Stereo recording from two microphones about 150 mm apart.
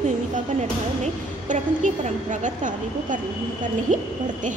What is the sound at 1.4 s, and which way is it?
A woman's voice, 55° right (ahead or behind).